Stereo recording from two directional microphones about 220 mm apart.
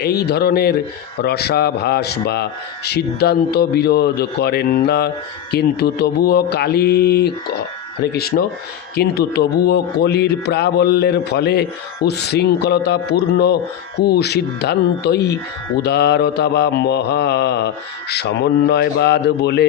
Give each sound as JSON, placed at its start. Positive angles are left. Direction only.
{"t": 0.0, "sound": "a man's voice", "side_deg": 45}